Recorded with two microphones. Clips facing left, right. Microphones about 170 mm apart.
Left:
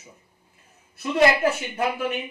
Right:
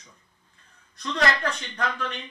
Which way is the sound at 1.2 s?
10° left (ahead or behind).